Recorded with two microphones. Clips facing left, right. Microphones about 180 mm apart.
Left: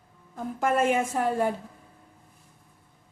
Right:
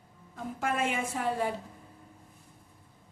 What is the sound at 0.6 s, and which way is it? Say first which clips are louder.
Speech: left 7 dB; 45° left (ahead or behind).